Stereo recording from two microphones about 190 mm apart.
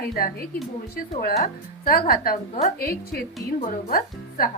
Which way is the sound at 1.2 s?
50° left (ahead or behind).